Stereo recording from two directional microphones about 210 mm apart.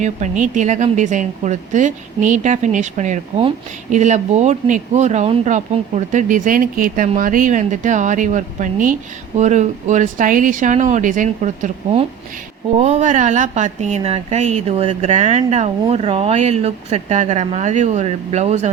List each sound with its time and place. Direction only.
0.0 s a woman's voice: 35° right (ahead or behind)